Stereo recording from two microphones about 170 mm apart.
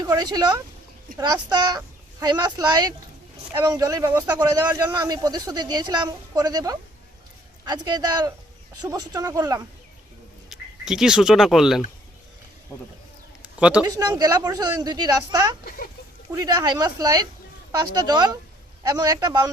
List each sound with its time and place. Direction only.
0.0 s speech: 25° right (ahead or behind)
10.5 s speech: 5° right (ahead or behind)
13.6 s speech: 5° right (ahead or behind)
13.8 s speech: 20° right (ahead or behind)